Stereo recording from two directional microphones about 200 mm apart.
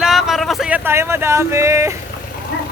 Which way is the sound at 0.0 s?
Centre (ahead or behind).